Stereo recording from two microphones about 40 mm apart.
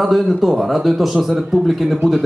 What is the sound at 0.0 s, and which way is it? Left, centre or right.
Speech, centre.